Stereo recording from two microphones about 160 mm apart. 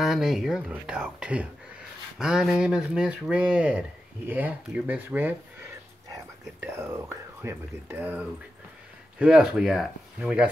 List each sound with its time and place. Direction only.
0.0 s speech: centre (ahead or behind)
6.6 s speech: 15° right (ahead or behind)